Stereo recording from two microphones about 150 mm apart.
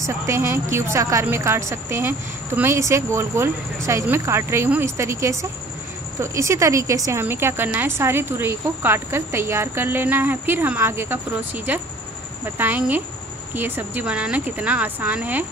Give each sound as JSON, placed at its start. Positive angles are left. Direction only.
{"t": 0.0, "sound": "speech", "side_deg": -15}